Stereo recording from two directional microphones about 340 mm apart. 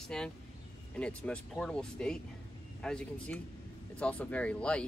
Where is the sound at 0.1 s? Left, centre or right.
Centre.